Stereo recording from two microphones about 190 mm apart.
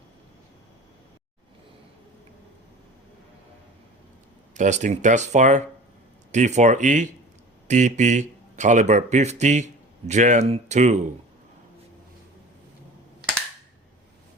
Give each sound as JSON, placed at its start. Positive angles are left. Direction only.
{"t": 4.5, "sound": "speech", "side_deg": -40}